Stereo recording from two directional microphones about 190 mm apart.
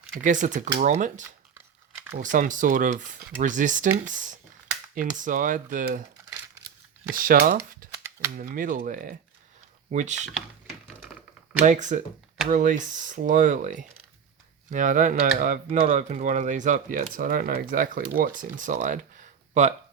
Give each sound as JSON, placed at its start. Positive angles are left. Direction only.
{"t": 0.2, "sound": "speech", "side_deg": -40}
{"t": 7.1, "sound": "speech", "side_deg": -50}
{"t": 7.9, "sound": "a sound", "side_deg": -15}
{"t": 8.4, "sound": "speech", "side_deg": -45}
{"t": 11.6, "sound": "speech", "side_deg": -40}